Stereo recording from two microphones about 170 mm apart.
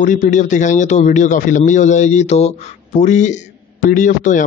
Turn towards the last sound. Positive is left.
turn(degrees=50)  # may be behind; listen again after turning